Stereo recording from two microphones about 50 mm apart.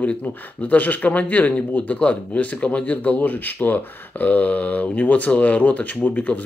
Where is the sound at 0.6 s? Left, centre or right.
Left.